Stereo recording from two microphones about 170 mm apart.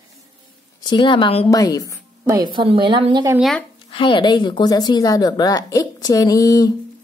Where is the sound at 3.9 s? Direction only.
30° left (ahead or behind).